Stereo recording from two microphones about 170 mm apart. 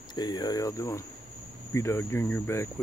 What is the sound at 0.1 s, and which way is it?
Speech, 25° left (ahead or behind).